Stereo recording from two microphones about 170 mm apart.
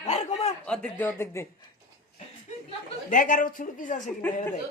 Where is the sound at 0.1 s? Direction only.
45° left (ahead or behind).